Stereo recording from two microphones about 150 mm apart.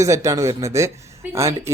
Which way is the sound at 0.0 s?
20° right (ahead or behind).